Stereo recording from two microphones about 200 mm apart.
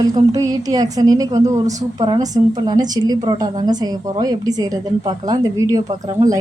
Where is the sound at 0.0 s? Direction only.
20° right (ahead or behind).